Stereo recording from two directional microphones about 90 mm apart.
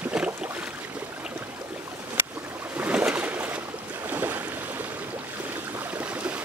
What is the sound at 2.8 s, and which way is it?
Boat, 15° right (ahead or behind).